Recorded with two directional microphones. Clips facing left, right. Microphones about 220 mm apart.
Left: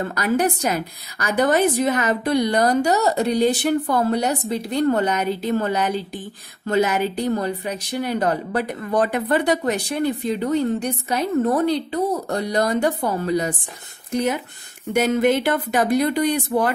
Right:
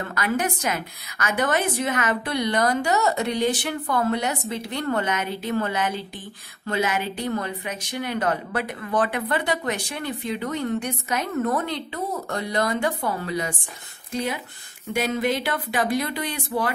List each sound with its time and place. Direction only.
0.0 s speech: 35° left (ahead or behind)
15.0 s speech: 50° left (ahead or behind)